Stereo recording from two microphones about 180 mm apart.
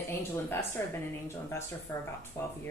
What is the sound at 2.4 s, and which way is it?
Speech, 20° left (ahead or behind).